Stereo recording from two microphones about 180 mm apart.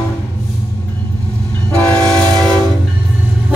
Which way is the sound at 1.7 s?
10° left (ahead or behind).